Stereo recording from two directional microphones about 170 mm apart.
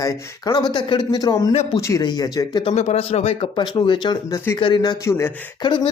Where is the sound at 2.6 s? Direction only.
40° left (ahead or behind); by 5.3 s 15° left (ahead or behind).